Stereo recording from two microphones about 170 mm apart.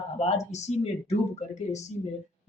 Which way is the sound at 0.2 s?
35° left (ahead or behind).